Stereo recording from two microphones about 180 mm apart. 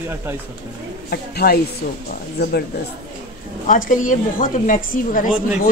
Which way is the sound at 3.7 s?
45° left (ahead or behind).